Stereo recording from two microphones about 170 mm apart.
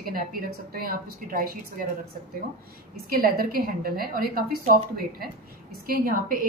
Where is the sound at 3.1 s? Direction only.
60° right (ahead or behind).